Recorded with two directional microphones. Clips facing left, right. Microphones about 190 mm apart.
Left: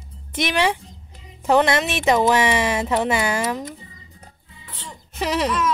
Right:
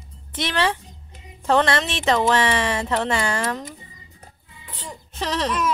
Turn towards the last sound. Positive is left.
turn(degrees=10)  # may be behind; listen again after turning